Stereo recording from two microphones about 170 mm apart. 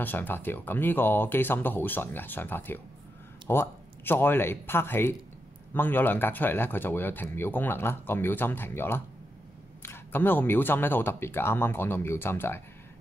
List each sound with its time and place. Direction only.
0.0 s speech: 10° left (ahead or behind)